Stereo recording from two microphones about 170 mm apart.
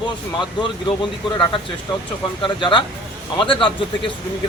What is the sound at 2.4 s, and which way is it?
A man's voice, 30° left (ahead or behind).